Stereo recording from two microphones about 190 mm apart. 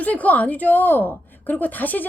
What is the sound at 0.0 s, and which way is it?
A woman's voice, 10° left (ahead or behind).